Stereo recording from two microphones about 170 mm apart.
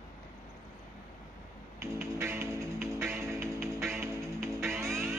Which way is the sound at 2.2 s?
15° right (ahead or behind).